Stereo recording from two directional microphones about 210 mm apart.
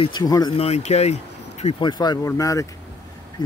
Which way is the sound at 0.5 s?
30° left (ahead or behind).